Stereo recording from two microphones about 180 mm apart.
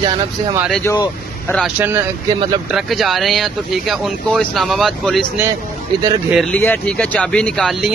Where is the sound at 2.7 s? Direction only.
Centre (ahead or behind).